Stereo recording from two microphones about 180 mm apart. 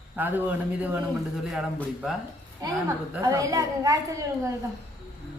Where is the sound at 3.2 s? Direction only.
20° right (ahead or behind).